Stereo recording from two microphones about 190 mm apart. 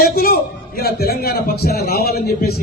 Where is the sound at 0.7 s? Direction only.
55° left (ahead or behind).